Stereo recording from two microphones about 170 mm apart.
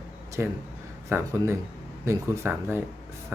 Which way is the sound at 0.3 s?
15° right (ahead or behind).